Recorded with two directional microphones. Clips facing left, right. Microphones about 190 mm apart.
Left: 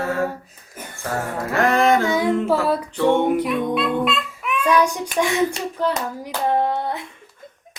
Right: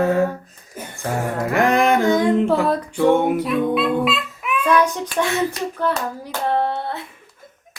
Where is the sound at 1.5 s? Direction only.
15° right (ahead or behind).